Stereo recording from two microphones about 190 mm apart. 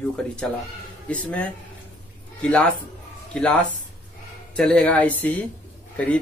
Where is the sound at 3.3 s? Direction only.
5° left (ahead or behind).